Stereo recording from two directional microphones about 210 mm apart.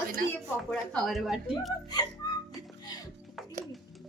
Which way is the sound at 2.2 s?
20° left (ahead or behind).